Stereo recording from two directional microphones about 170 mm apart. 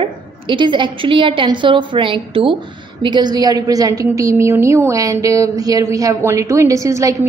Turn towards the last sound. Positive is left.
turn(degrees=-20)  # may be behind; listen again after turning